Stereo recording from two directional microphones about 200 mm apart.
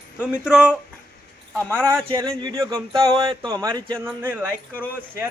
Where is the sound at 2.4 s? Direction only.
20° right (ahead or behind).